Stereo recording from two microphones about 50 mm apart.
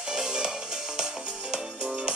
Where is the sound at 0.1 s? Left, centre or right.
Centre.